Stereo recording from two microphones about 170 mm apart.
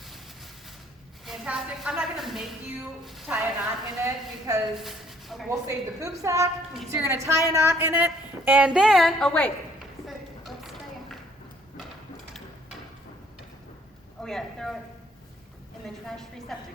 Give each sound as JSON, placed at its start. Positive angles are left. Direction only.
{"t": 1.2, "sound": "a sound", "side_deg": 0}
{"t": 3.0, "sound": "a woman's voice", "side_deg": 0}
{"t": 4.0, "sound": "a woman's voice", "side_deg": -20}
{"t": 4.7, "sound": "speech", "side_deg": 0}
{"t": 5.5, "sound": "a woman's voice", "side_deg": -15}
{"t": 10.1, "sound": "a sound", "side_deg": 0}
{"t": 14.2, "sound": "a man's voice", "side_deg": 5}
{"t": 16.0, "sound": "a woman's voice", "side_deg": 0}